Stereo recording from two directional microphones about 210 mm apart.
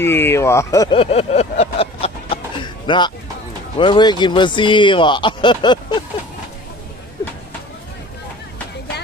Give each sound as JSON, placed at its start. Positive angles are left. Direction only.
{"t": 0.0, "sound": "speech", "side_deg": 10}